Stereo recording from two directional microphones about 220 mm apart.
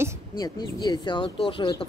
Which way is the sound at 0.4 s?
20° left (ahead or behind).